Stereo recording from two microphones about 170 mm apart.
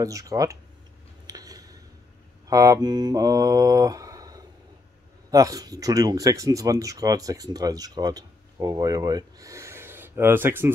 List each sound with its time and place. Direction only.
0.0 s speech: 20° right (ahead or behind)
1.2 s a sound: 20° right (ahead or behind)
2.4 s mantra: 20° right (ahead or behind)
5.3 s speech: 20° right (ahead or behind)